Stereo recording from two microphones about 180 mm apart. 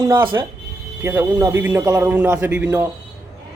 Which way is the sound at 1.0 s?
15° right (ahead or behind).